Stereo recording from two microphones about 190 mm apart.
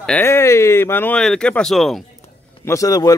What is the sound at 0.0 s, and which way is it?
Speech, 10° left (ahead or behind).